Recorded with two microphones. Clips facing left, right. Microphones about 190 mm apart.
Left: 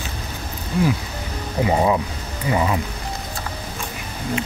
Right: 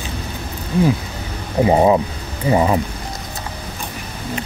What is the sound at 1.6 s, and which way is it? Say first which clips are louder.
Speech: right 5 dB; 30° right (ahead or behind).